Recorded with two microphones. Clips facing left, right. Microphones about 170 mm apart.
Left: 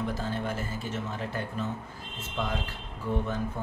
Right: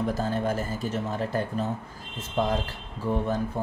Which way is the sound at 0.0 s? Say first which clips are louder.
Right 5 dB; 40° right (ahead or behind).